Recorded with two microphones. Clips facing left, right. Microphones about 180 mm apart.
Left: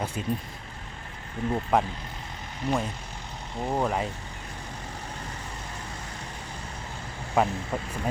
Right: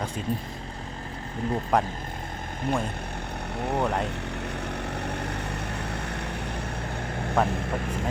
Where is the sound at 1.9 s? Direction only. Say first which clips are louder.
Right 4 dB; 50° right (ahead or behind).